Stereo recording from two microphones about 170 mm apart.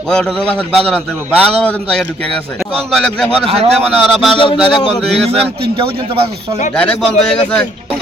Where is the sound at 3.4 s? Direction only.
35° right (ahead or behind).